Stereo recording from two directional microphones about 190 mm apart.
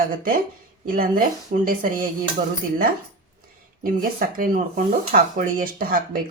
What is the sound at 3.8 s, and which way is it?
Speech, 50° right (ahead or behind).